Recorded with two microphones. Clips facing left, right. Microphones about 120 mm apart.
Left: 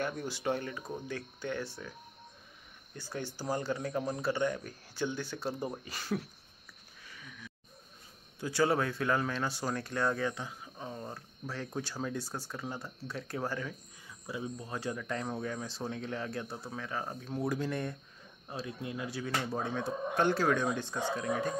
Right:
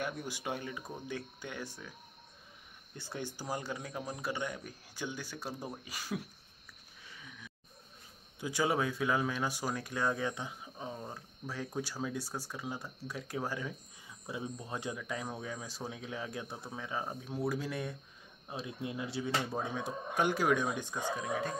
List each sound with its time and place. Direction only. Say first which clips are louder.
0.0 s speech: left 4 dB; 15° right (ahead or behind)
7.1 s a sound: left 2 dB; 15° right (ahead or behind)
8.4 s speech: left 3 dB; 15° right (ahead or behind)
15.0 s speech: left 3 dB; 5° right (ahead or behind)
18.5 s speech: left 1 dB; 20° right (ahead or behind)